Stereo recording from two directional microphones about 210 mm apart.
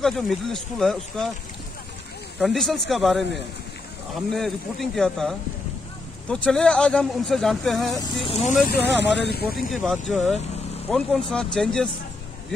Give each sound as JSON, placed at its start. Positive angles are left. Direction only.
{"t": 0.0, "sound": "speech", "side_deg": 0}
{"t": 2.4, "sound": "speech", "side_deg": 0}
{"t": 4.3, "sound": "speech", "side_deg": 0}
{"t": 8.2, "sound": "speech", "side_deg": 30}
{"t": 9.0, "sound": "speech", "side_deg": 50}
{"t": 9.6, "sound": "speech", "side_deg": 0}